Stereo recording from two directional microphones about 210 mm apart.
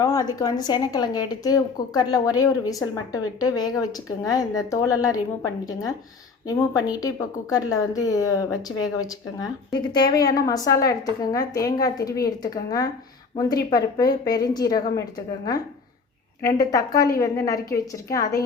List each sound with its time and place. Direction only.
0.0 s a woman's voice: 15° left (ahead or behind)
6.5 s a woman's voice: 15° left (ahead or behind)
16.4 s a woman's voice: 15° left (ahead or behind)